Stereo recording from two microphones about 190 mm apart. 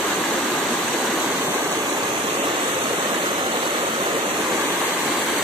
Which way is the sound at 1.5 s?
10° right (ahead or behind).